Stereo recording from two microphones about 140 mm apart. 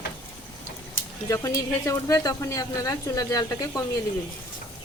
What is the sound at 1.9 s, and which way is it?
Speech, 20° left (ahead or behind).